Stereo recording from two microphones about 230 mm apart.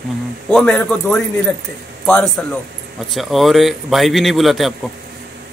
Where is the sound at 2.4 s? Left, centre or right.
Centre.